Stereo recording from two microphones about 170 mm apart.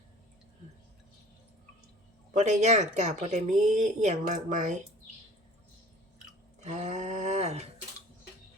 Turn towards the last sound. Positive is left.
turn(degrees=-40)  # may be behind; listen again after turning